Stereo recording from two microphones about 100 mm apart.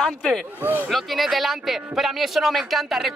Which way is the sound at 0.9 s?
Centre (ahead or behind).